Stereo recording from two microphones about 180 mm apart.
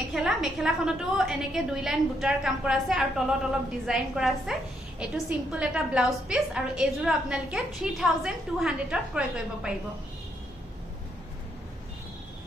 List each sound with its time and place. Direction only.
0.1 s a woman's voice: centre (ahead or behind)